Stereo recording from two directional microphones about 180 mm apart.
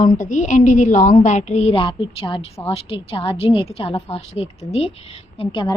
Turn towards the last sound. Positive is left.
turn(degrees=30)  # may be behind; listen again after turning